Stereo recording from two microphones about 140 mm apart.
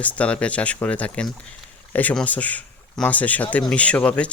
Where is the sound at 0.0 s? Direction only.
10° left (ahead or behind).